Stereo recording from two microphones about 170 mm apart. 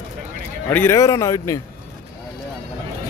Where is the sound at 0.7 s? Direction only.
10° left (ahead or behind).